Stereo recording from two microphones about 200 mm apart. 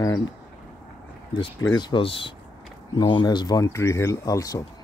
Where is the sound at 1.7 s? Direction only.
20° left (ahead or behind).